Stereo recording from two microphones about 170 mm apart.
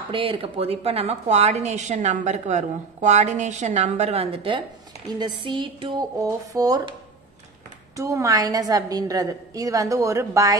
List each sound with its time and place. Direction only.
0.1 s a woman's voice: 35° right (ahead or behind)